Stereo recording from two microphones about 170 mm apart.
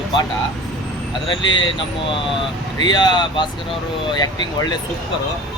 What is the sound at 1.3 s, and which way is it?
Speech, 25° left (ahead or behind).